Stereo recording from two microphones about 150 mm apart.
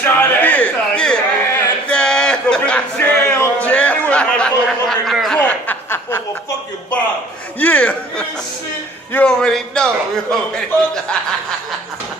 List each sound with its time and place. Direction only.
0.0 s a sound: 10° left (ahead or behind)
5.4 s chuckle: 10° left (ahead or behind)
7.6 s a man's voice: 10° left (ahead or behind)